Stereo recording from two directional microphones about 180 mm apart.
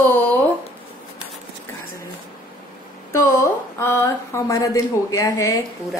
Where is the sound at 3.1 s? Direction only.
15° left (ahead or behind).